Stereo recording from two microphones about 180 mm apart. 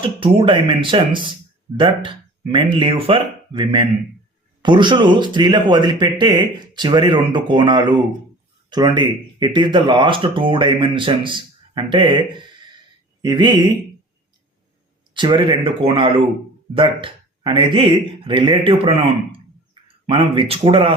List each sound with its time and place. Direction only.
0.0 s speech: 30° right (ahead or behind)
15.1 s speech: 25° right (ahead or behind)